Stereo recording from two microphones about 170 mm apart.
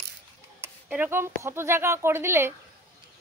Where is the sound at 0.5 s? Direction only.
10° right (ahead or behind).